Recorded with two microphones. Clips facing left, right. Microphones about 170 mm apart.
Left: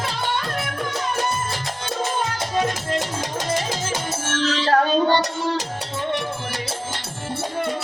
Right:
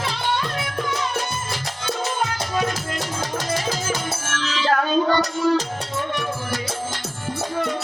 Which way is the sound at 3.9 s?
35° left (ahead or behind).